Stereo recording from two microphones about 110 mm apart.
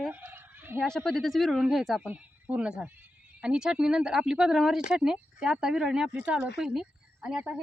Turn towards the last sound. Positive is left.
turn(degrees=-10)  # may be behind; listen again after turning